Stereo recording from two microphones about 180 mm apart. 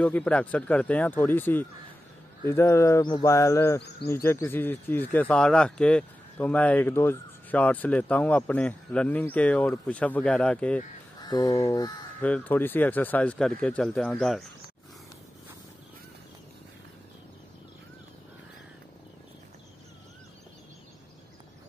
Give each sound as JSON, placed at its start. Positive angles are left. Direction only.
{"t": 0.0, "sound": "speech", "side_deg": 5}
{"t": 11.1, "sound": "a sound", "side_deg": 20}
{"t": 11.6, "sound": "speech", "side_deg": 15}